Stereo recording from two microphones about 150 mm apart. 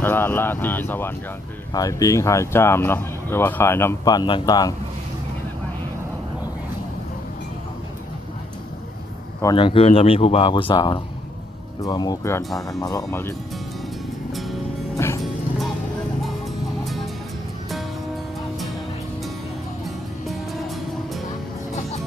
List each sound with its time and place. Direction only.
0.0 s speech: 15° left (ahead or behind)
9.6 s speech: 35° left (ahead or behind); by 12.4 s 20° left (ahead or behind)
12.4 s speech: centre (ahead or behind)
12.8 s speech: 20° left (ahead or behind)
15.0 s music: 15° left (ahead or behind)